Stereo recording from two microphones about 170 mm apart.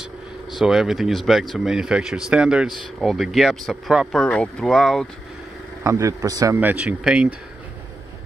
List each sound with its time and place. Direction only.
0.5 s speech: centre (ahead or behind)
5.9 s speech: 20° right (ahead or behind)